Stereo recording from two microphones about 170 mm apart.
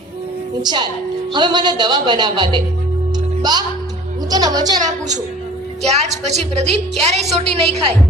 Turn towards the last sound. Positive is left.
turn(degrees=-35)  # may be behind; listen again after turning